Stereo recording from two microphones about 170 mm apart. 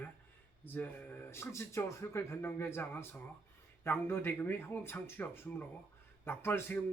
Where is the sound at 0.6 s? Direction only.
10° left (ahead or behind).